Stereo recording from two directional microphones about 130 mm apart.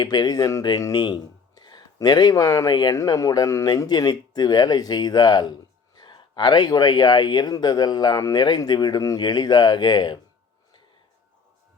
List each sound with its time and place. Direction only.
0.0 s speech: 30° left (ahead or behind)